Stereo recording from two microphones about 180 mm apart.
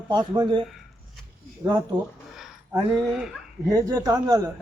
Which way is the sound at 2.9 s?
5° right (ahead or behind).